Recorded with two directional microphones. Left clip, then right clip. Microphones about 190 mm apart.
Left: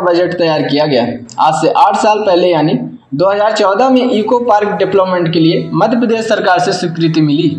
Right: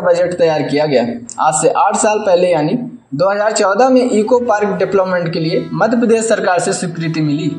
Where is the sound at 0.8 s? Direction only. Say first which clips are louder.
Left 2 dB; 20° right (ahead or behind).